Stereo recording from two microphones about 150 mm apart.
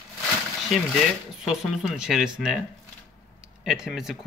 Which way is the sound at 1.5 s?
Centre (ahead or behind).